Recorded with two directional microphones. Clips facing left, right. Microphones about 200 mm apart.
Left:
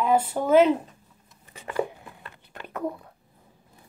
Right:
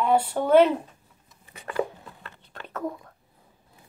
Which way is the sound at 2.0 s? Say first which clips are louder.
Even; 10° left (ahead or behind).